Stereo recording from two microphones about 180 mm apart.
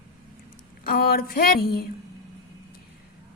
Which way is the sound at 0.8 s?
55° left (ahead or behind).